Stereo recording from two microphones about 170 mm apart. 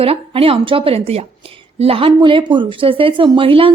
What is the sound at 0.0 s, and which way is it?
A woman's voice, 35° right (ahead or behind).